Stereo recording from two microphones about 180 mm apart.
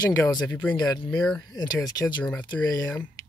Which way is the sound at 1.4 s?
20° left (ahead or behind).